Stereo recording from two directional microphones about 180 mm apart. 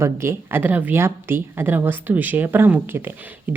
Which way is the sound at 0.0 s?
15° right (ahead or behind).